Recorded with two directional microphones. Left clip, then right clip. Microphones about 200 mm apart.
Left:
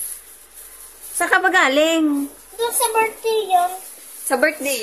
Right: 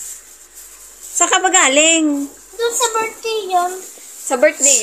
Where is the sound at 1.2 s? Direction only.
Centre (ahead or behind).